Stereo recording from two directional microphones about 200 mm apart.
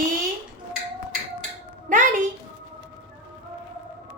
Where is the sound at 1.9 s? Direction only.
40° right (ahead or behind).